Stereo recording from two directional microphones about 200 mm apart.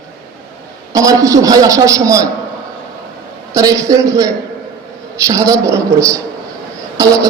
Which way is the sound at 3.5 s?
15° right (ahead or behind).